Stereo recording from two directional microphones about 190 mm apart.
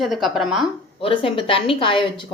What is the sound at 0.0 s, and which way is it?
Speech, centre (ahead or behind).